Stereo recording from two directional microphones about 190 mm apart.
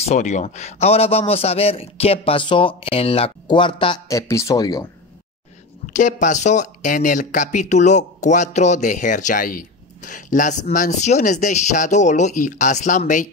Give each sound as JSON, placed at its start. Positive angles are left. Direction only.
{"t": 0.0, "sound": "speech", "side_deg": 35}
{"t": 4.1, "sound": "speech", "side_deg": 15}
{"t": 5.9, "sound": "speech", "side_deg": 40}